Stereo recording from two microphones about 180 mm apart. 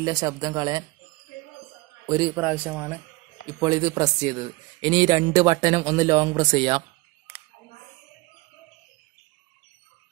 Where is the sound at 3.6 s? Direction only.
20° right (ahead or behind).